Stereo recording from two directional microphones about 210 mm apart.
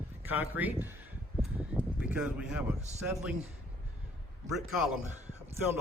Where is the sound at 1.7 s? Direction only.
5° right (ahead or behind).